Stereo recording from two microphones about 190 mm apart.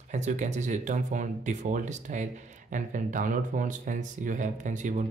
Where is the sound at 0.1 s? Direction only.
40° right (ahead or behind).